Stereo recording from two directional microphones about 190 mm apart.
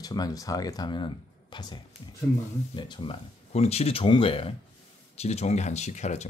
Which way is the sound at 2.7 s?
25° left (ahead or behind).